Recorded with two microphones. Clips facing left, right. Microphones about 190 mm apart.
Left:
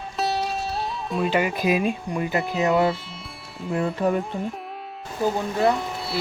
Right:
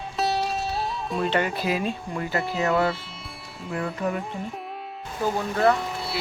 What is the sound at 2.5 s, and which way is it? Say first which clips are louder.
Speech: left 3 dB; 20° left (ahead or behind).